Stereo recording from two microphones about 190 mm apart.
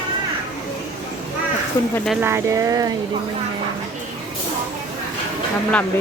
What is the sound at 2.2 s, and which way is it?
Speech, 15° right (ahead or behind).